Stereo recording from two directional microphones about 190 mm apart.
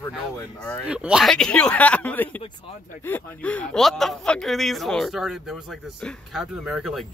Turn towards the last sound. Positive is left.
turn(degrees=0)  # may be behind; listen again after turning